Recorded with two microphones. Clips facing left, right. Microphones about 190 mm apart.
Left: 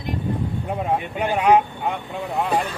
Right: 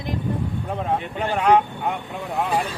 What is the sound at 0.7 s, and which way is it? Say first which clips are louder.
Speech: left 2 dB; 10° left (ahead or behind).